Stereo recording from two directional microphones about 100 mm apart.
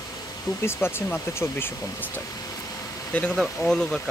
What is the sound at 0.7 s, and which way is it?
Speech, 25° left (ahead or behind).